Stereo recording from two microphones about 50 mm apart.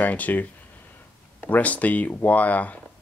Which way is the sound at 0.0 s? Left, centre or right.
Left.